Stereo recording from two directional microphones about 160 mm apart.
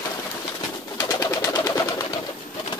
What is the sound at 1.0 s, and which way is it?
Bird, 25° left (ahead or behind).